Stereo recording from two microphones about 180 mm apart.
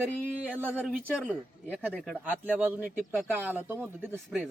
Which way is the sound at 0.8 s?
5° left (ahead or behind).